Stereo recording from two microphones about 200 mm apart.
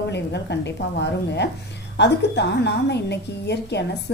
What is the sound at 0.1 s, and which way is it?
Speech, 60° left (ahead or behind).